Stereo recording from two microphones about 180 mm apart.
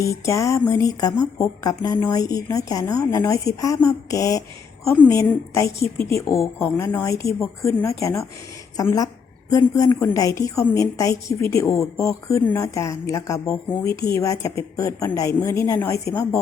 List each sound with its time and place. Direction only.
0.1 s a woman's voice: 15° left (ahead or behind)
11.8 s speech: centre (ahead or behind)
12.3 s speech: 15° left (ahead or behind)